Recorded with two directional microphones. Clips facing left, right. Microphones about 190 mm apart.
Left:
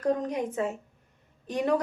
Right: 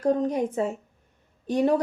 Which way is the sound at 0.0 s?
30° right (ahead or behind).